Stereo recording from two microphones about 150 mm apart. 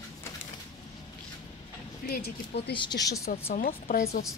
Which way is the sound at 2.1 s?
90° left.